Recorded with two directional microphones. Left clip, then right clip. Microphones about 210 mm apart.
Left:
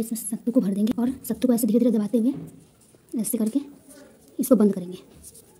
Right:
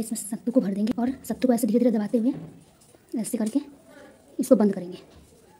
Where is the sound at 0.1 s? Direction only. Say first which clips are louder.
Right 2 dB; 15° left (ahead or behind).